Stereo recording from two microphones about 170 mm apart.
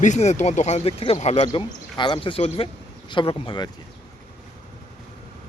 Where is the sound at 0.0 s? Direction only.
45° left (ahead or behind).